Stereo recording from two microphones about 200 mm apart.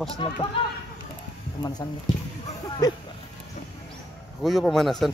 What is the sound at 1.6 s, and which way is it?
Speech, 20° left (ahead or behind).